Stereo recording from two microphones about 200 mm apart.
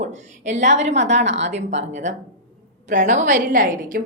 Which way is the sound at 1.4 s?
35° right (ahead or behind).